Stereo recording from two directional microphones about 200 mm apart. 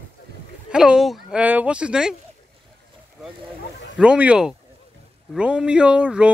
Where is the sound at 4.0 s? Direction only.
5° right (ahead or behind).